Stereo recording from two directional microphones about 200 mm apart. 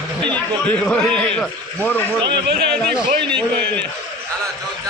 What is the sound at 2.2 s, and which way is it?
Speech, 55° right (ahead or behind).